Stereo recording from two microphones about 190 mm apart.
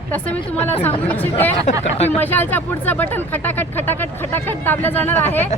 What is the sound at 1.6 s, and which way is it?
Speech, 35° left (ahead or behind).